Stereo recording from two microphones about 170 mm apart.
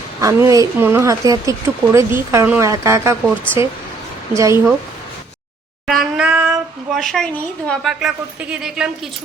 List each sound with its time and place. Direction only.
0.2 s speech: 20° right (ahead or behind)
4.4 s speech: 15° right (ahead or behind)
5.9 s speech: 5° right (ahead or behind)